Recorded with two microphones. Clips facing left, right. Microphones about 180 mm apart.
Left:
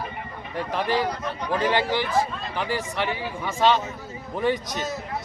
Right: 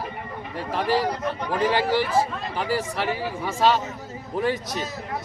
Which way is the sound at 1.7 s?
5° right (ahead or behind).